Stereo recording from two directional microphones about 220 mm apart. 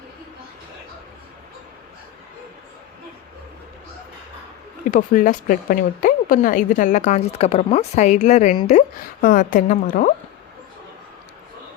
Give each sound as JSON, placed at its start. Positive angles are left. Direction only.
{"t": 4.9, "sound": "speech", "side_deg": 35}